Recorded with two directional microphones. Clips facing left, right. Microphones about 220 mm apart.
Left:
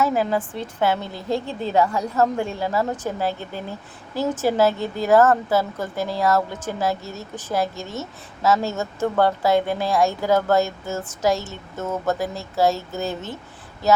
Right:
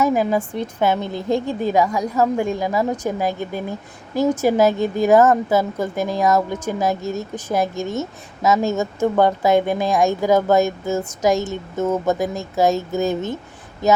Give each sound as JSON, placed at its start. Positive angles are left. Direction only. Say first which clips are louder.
{"t": 0.0, "sound": "a woman's voice", "louder": "right 3 dB", "side_deg": -15}